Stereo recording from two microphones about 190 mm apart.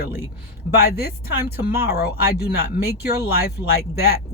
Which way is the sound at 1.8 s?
55° left (ahead or behind).